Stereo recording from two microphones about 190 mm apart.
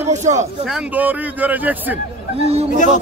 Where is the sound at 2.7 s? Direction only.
40° left (ahead or behind).